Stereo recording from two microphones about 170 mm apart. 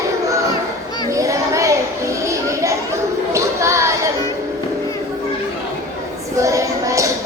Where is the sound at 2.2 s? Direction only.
15° right (ahead or behind).